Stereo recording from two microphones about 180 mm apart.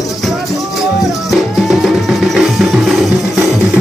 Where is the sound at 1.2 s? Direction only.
Centre (ahead or behind).